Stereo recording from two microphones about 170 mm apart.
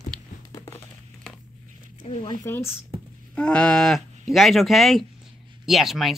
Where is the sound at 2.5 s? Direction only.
15° left (ahead or behind).